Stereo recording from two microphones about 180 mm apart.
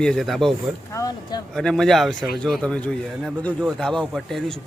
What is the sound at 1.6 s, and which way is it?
Speech, 5° left (ahead or behind).